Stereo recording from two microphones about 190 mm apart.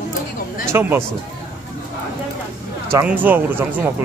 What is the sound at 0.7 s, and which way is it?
Music, 10° right (ahead or behind).